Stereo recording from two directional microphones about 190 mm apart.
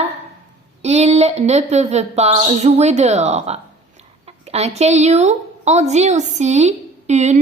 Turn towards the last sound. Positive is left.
turn(degrees=-35)  # may be behind; listen again after turning